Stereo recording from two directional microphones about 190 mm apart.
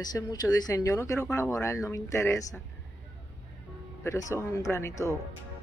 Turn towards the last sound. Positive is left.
turn(degrees=15)  # may be behind; listen again after turning